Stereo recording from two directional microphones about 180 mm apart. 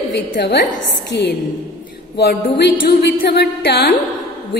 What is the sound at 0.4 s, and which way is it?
Speech, 70° left (ahead or behind).